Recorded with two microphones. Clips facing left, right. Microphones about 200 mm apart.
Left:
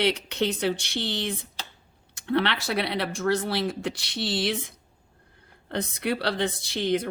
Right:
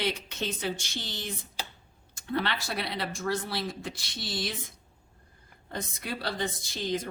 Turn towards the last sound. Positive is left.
turn(degrees=65)  # may be behind; listen again after turning